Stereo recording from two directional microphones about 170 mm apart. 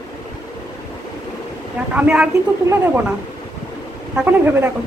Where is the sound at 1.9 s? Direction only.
5° right (ahead or behind).